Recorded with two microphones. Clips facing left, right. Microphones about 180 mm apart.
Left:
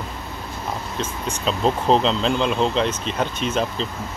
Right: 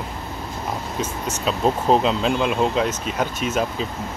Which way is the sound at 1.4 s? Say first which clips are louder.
Even; 5° right (ahead or behind).